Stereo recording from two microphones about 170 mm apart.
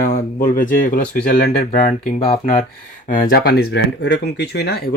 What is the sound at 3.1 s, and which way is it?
Speech, 60° left (ahead or behind).